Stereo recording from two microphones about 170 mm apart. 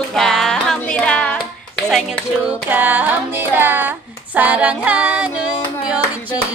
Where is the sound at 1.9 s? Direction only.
Centre (ahead or behind).